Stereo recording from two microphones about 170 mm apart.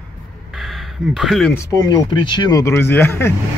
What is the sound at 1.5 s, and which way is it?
Speech, 20° left (ahead or behind).